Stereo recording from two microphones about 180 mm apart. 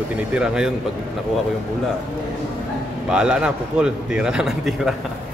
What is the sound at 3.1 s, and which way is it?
A man's voice, 5° right (ahead or behind).